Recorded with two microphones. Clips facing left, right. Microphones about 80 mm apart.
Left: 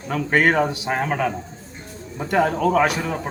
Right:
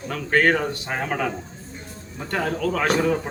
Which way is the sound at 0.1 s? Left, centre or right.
Centre.